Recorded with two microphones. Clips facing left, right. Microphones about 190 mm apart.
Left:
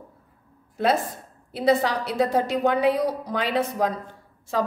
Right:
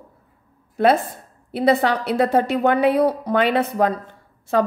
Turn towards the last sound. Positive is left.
turn(degrees=-60)  # may be behind; listen again after turning